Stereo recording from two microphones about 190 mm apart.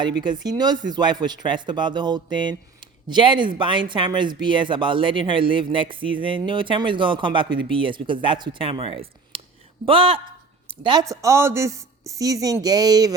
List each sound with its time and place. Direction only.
0.2 s speech: 20° right (ahead or behind)
11.1 s speech: 15° right (ahead or behind)